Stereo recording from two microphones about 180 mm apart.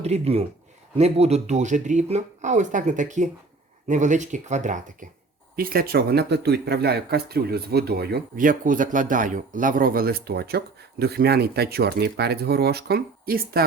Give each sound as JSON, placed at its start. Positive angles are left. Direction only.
{"t": 0.0, "sound": "speech", "side_deg": -35}
{"t": 5.5, "sound": "speech", "side_deg": -55}